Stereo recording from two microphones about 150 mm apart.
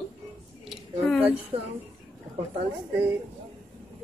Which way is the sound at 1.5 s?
40° right (ahead or behind).